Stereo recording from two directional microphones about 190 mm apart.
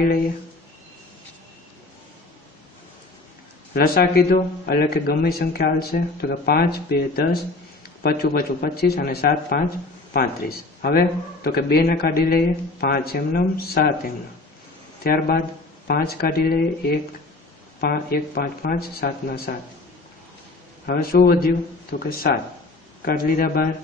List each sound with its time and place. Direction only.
3.7 s a man's voice: 55° left (ahead or behind)
15.0 s a man's voice: 50° left (ahead or behind)
20.8 s a man's voice: 50° left (ahead or behind)